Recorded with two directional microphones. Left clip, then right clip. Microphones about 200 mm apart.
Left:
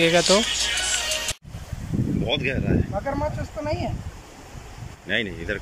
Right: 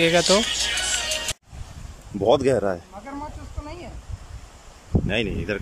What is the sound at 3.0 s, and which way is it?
Speech, 55° left (ahead or behind).